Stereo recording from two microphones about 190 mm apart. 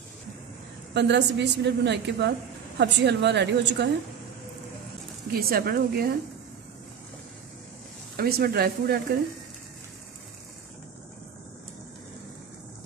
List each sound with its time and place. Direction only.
0.9 s a woman's voice: 65° right (ahead or behind)
5.3 s a woman's voice: 50° right (ahead or behind)
8.2 s a woman's voice: 55° right (ahead or behind)